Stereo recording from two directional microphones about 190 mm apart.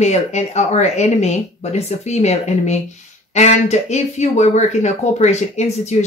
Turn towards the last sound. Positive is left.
turn(degrees=35)  # may be behind; listen again after turning